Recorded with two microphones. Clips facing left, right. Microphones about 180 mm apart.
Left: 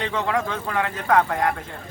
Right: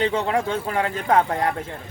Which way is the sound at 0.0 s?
30° right (ahead or behind).